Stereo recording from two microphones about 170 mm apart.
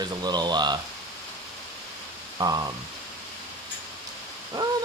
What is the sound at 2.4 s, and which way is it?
Speech, 25° right (ahead or behind).